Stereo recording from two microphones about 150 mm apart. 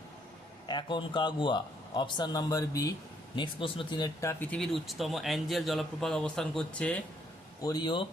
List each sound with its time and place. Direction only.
0.7 s a man's voice: 30° left (ahead or behind)
3.3 s speech: 35° left (ahead or behind)
4.2 s speech: 15° left (ahead or behind)
4.5 s speech: centre (ahead or behind)
7.6 s a man's voice: 30° left (ahead or behind)